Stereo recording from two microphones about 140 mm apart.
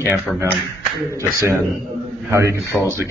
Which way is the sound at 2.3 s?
20° right (ahead or behind).